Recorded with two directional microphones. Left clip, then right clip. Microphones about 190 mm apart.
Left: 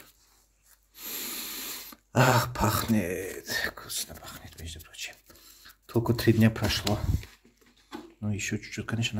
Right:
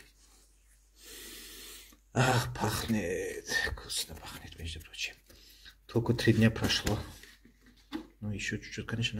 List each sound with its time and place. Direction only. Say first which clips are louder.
2.1 s speech: left 6 dB; 35° left (ahead or behind); by 4.9 s 10° left (ahead or behind)
5.3 s speech: left 2 dB; 30° left (ahead or behind)
8.2 s speech: left 5 dB; 30° left (ahead or behind)